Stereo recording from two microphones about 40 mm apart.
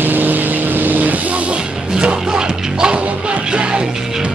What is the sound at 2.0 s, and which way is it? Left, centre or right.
Music, right.